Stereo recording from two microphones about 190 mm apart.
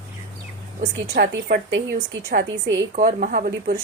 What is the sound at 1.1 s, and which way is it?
Speech, 50° right (ahead or behind).